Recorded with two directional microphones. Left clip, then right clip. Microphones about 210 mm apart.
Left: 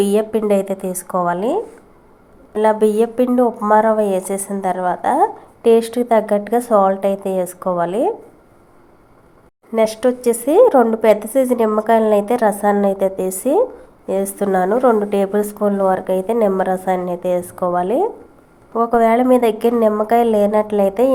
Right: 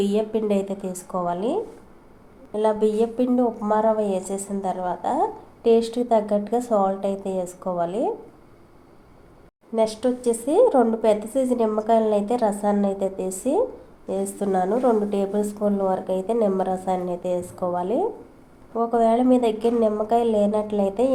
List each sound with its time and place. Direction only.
0.0 s a woman's voice: 25° left (ahead or behind)
9.7 s a woman's voice: 25° left (ahead or behind)